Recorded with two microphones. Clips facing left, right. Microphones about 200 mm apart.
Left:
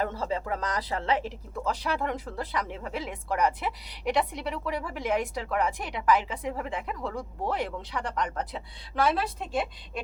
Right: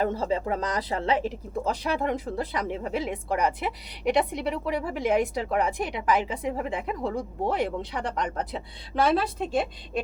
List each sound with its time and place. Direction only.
0.0 s a woman's voice: 20° right (ahead or behind)